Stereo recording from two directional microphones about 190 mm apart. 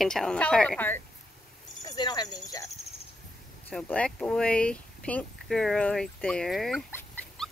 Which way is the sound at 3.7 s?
5° left (ahead or behind).